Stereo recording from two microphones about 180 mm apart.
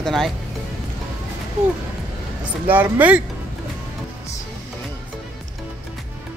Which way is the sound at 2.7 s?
10° right (ahead or behind).